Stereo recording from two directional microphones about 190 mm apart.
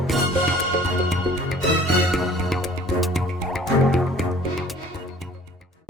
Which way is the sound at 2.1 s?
Centre (ahead or behind).